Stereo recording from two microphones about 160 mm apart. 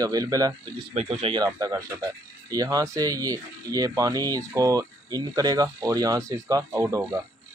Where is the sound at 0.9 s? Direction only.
35° right (ahead or behind); by 7.2 s 20° right (ahead or behind).